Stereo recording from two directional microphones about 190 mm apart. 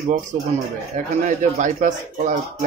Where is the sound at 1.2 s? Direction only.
40° right (ahead or behind).